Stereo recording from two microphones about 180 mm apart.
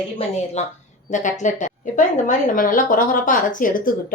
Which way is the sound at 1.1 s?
45° left (ahead or behind).